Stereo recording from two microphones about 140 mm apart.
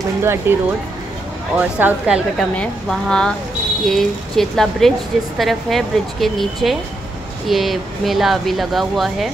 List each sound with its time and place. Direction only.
0.2 s speech: 20° right (ahead or behind)
1.6 s speech: 10° right (ahead or behind)
2.5 s speech: 5° left (ahead or behind)